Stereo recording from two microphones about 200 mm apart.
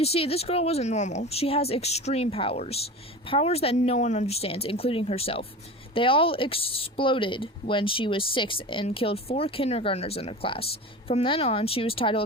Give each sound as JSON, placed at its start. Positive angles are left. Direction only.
{"t": 0.0, "sound": "speech", "side_deg": 30}